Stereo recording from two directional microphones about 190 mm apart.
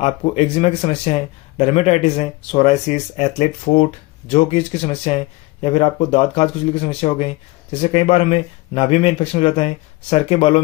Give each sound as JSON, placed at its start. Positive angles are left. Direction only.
{"t": 0.0, "sound": "a man's voice", "side_deg": 35}